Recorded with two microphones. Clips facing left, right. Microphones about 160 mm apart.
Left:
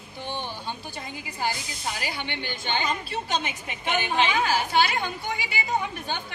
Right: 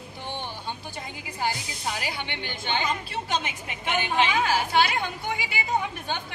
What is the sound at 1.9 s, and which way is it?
A woman's voice, 20° right (ahead or behind).